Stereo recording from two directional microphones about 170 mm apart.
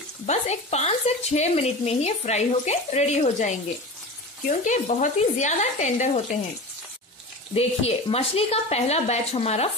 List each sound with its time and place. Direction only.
0.3 s speech: 40° left (ahead or behind)
4.6 s frying: 45° left (ahead or behind)
7.5 s speech: 35° left (ahead or behind)